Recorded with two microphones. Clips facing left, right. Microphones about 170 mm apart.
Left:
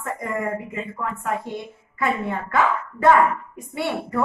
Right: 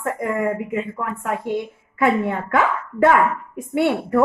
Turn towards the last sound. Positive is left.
turn(degrees=-60)  # may be behind; listen again after turning